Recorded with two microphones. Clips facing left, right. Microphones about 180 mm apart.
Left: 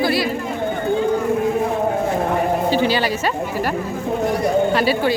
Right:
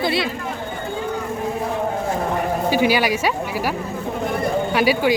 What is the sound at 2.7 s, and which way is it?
Speech, 10° right (ahead or behind).